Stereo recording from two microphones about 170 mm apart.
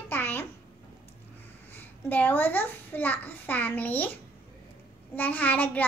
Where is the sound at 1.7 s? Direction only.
10° left (ahead or behind).